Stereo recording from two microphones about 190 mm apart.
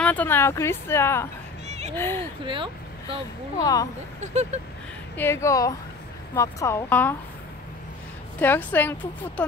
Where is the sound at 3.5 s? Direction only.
20° left (ahead or behind).